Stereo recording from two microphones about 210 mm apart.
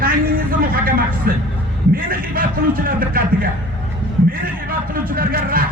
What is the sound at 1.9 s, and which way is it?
A man's voice, 45° right (ahead or behind).